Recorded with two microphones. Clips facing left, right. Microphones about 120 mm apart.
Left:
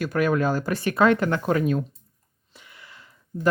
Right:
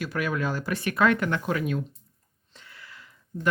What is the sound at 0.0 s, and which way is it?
Speech, 45° left (ahead or behind).